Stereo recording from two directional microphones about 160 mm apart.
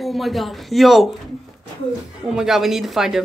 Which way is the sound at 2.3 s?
5° right (ahead or behind).